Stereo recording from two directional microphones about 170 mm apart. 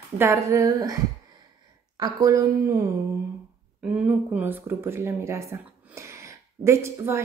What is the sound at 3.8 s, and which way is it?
Speech, 5° right (ahead or behind).